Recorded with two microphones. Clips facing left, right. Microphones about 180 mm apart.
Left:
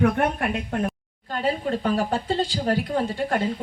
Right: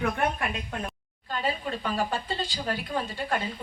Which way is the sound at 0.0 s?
45° left (ahead or behind).